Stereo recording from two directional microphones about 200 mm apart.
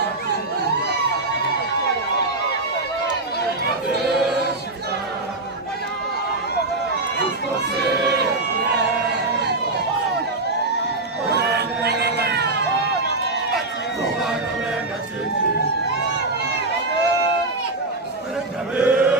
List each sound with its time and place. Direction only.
7.9 s crowd: 55° right (ahead or behind)
11.3 s crowd: 55° right (ahead or behind)
18.8 s chant: 5° right (ahead or behind)